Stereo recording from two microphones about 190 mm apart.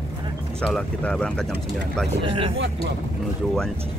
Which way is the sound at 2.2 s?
25° right (ahead or behind).